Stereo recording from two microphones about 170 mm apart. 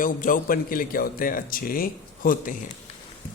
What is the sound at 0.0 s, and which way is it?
A man's voice, 50° left (ahead or behind).